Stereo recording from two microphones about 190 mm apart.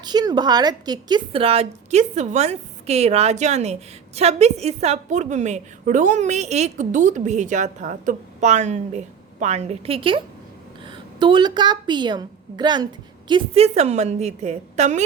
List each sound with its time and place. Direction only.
0.0 s a woman's voice: 20° right (ahead or behind); by 15.0 s 35° right (ahead or behind)